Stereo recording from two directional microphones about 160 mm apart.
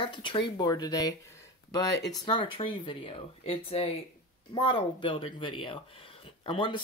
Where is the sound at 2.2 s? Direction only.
30° left (ahead or behind).